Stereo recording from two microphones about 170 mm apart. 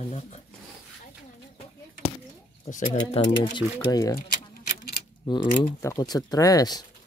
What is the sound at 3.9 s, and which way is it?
Speech, 20° left (ahead or behind).